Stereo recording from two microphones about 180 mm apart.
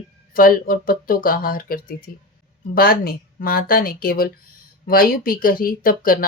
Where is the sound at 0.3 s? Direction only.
55° left (ahead or behind).